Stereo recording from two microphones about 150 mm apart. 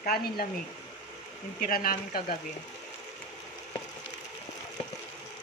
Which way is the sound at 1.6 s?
70° left (ahead or behind).